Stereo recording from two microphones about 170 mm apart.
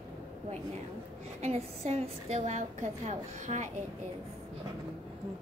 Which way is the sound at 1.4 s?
40° right (ahead or behind).